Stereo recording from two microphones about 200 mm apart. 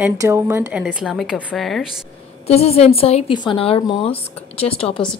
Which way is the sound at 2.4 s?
30° left (ahead or behind).